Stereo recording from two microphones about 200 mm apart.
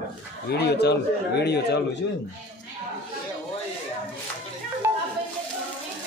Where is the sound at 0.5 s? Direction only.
55° left (ahead or behind).